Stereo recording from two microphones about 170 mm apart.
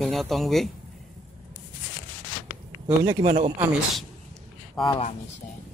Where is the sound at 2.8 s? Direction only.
20° right (ahead or behind).